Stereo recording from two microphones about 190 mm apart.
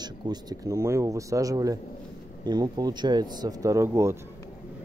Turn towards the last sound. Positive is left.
turn(degrees=-15)  # may be behind; listen again after turning